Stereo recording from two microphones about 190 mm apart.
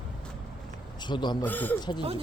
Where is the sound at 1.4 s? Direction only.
10° left (ahead or behind).